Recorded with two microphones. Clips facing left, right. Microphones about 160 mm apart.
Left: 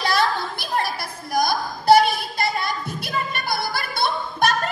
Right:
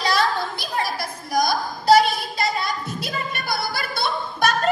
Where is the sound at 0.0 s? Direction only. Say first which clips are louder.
Even; 55° left (ahead or behind).